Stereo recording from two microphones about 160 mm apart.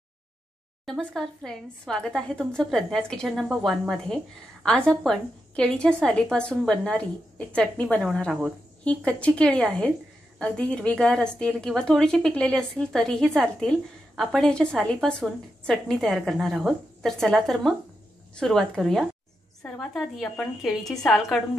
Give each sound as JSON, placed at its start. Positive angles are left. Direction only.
{"t": 0.8, "sound": "a woman's voice", "side_deg": 5}